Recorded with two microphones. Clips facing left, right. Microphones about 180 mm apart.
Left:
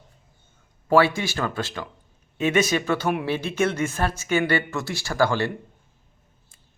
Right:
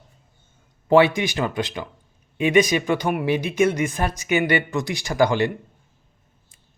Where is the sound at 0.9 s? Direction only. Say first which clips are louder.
Right 3 dB; 20° right (ahead or behind).